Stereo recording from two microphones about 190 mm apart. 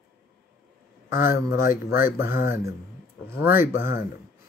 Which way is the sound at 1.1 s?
15° right (ahead or behind).